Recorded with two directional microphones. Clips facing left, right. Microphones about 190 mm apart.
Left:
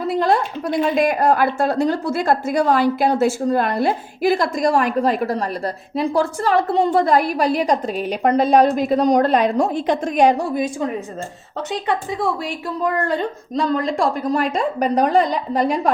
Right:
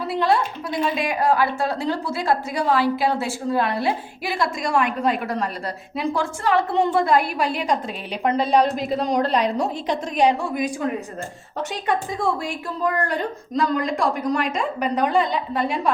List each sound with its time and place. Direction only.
0.1 s a woman's voice: 45° left (ahead or behind); by 10.8 s 30° left (ahead or behind)
12.8 s a woman's voice: 25° left (ahead or behind); by 15.9 s 40° left (ahead or behind)